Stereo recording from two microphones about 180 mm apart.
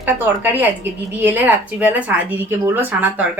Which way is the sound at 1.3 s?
10° right (ahead or behind).